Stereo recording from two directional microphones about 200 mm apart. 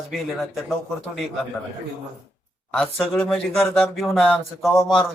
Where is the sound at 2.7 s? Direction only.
Centre (ahead or behind).